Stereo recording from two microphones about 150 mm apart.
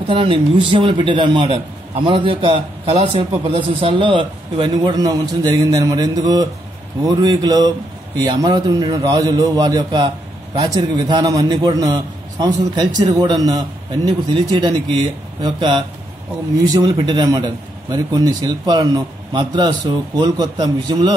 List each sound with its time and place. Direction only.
0.1 s a man's voice: 35° right (ahead or behind)